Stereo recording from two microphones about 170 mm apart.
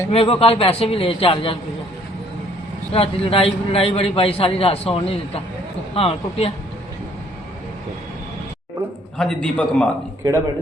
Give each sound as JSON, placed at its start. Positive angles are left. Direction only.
{"t": 0.1, "sound": "a man's voice", "side_deg": 35}
{"t": 2.9, "sound": "a man's voice", "side_deg": 35}
{"t": 9.1, "sound": "a man's voice", "side_deg": 5}